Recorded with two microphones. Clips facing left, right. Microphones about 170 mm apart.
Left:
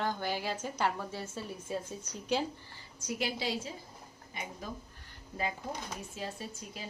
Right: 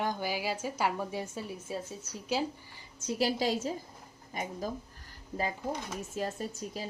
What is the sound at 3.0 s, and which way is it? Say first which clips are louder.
Speech: right 5 dB; 25° right (ahead or behind).